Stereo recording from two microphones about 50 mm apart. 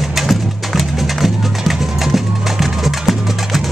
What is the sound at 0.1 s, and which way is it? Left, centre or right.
Music, centre.